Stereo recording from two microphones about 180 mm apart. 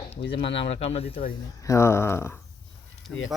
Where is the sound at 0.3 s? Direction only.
30° left (ahead or behind).